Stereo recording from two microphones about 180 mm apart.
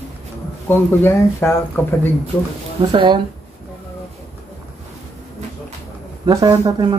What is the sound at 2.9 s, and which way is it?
Speech, 25° right (ahead or behind).